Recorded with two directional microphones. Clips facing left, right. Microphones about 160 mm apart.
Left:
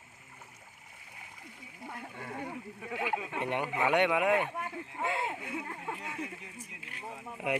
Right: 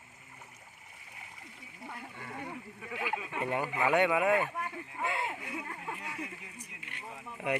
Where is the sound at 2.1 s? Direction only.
45° left (ahead or behind).